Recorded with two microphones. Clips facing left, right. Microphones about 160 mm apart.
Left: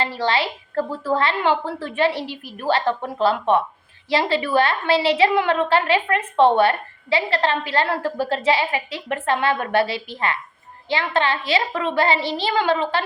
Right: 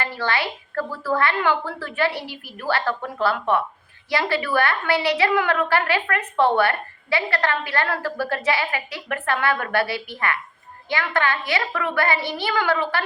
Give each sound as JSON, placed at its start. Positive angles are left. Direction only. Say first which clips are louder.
{"t": 0.0, "sound": "a woman's voice", "louder": "left 3 dB", "side_deg": 25}